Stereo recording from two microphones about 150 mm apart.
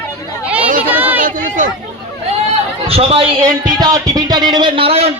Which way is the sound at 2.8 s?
40° right (ahead or behind).